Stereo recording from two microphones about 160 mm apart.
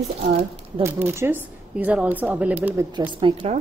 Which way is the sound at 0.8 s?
15° right (ahead or behind).